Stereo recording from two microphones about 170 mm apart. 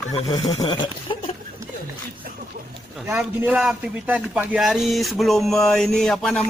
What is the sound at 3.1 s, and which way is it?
A man's voice, 5° right (ahead or behind).